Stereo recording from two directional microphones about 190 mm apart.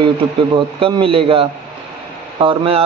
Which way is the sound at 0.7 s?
30° right (ahead or behind).